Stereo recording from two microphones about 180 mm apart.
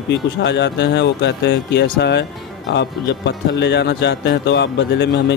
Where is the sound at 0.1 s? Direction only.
75° left (ahead or behind).